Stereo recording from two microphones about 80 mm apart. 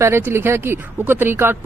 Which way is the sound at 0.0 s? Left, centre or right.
Right.